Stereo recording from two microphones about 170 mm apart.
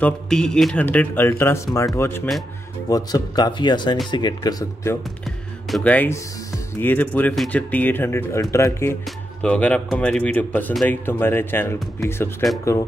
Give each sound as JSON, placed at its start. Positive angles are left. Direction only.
{"t": 0.0, "sound": "speech", "side_deg": 5}
{"t": 5.2, "sound": "music", "side_deg": 5}
{"t": 6.7, "sound": "speech", "side_deg": 10}